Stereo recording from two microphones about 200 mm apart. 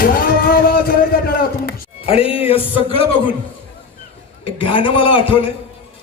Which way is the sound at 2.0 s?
30° left (ahead or behind).